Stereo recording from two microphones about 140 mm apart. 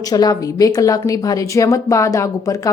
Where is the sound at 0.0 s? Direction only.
25° left (ahead or behind).